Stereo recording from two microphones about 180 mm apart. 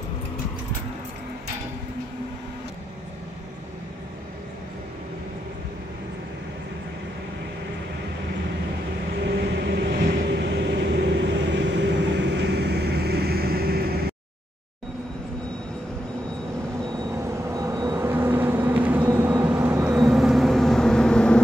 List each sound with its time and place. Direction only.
9.2 s vehicle: 70° right (ahead or behind)
17.2 s vehicle: 15° right (ahead or behind); by 21.4 s 5° left (ahead or behind)